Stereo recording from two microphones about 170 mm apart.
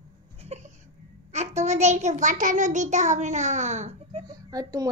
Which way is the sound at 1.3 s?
40° right (ahead or behind).